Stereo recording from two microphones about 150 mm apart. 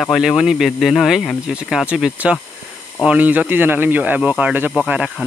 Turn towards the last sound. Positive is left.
turn(degrees=-5)  # may be behind; listen again after turning